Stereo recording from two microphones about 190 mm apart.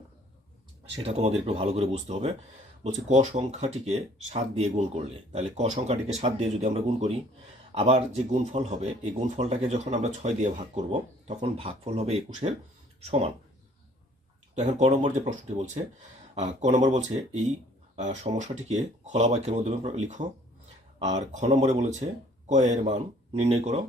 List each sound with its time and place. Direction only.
1.0 s speech: 35° right (ahead or behind)
14.5 s speech: 35° right (ahead or behind)